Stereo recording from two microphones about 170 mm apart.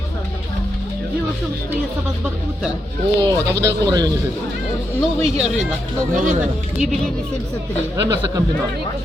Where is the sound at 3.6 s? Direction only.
20° right (ahead or behind).